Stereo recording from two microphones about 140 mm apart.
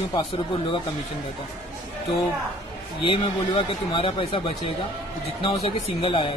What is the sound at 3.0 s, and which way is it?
A man's voice, 40° left (ahead or behind).